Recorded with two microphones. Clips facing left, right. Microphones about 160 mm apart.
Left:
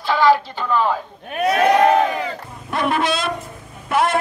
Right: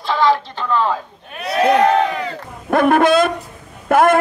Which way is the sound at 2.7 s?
50° right (ahead or behind).